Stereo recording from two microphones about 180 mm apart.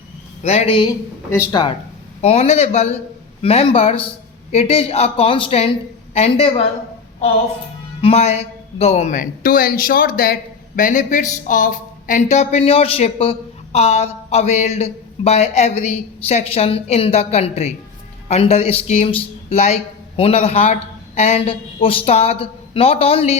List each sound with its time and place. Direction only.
0.4 s speech: 35° left (ahead or behind)
2.2 s speech: 35° left (ahead or behind)
8.0 s a man's voice: 35° left (ahead or behind)